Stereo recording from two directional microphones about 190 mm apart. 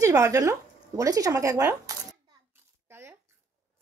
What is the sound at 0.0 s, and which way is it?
Speech, 15° right (ahead or behind).